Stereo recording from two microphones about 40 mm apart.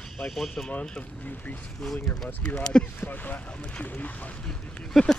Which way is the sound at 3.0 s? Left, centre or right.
Left.